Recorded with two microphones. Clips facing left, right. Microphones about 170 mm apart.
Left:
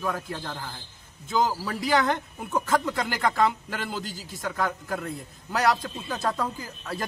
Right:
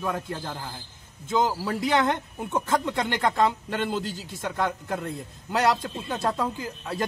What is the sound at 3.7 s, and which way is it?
A man's voice, 25° right (ahead or behind).